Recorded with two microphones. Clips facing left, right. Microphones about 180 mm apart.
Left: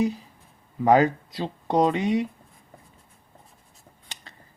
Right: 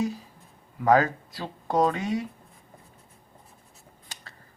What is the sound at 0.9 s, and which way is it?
Speech, 20° left (ahead or behind).